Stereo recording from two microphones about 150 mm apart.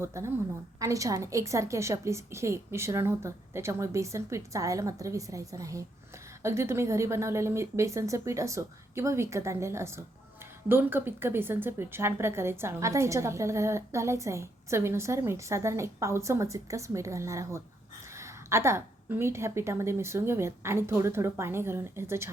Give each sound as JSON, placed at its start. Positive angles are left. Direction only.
{"t": 0.0, "sound": "a woman's voice", "side_deg": -20}